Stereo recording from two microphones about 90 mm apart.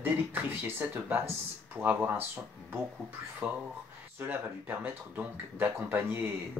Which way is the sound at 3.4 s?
20° right (ahead or behind).